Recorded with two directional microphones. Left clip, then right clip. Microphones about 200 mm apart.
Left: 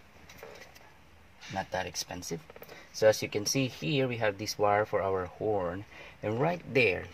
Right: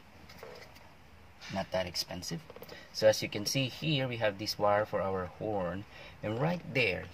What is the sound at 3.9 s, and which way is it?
Speech, 35° left (ahead or behind).